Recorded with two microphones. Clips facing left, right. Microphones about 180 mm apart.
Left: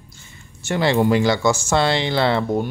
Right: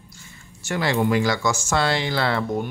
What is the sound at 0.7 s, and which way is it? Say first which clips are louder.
Speech: left 4 dB; 25° left (ahead or behind).